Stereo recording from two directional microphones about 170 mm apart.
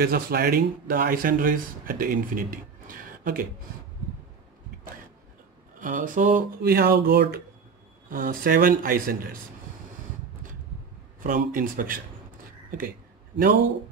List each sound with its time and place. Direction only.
0.0 s a man's voice: 60° right (ahead or behind)
5.8 s a man's voice: 50° right (ahead or behind); by 7.2 s 70° right (ahead or behind)
8.1 s a man's voice: 55° right (ahead or behind)
11.2 s a man's voice: 55° right (ahead or behind)